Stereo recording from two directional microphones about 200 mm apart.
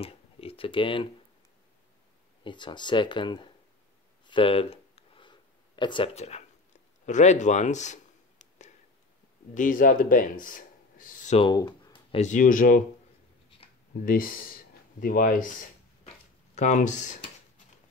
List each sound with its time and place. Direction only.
0.0 s computer keyboard: 30° left (ahead or behind)
2.4 s speech: 25° left (ahead or behind)
4.3 s a sound: 25° left (ahead or behind)
9.5 s speech: 40° left (ahead or behind)
13.6 s a sound: 30° left (ahead or behind)
14.0 s speech: 45° left (ahead or behind)
16.5 s speech: 35° left (ahead or behind)